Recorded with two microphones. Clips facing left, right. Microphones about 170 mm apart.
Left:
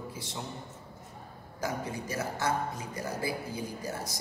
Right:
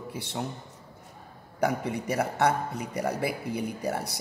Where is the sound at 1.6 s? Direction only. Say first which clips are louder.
Right 7 dB; 65° right (ahead or behind).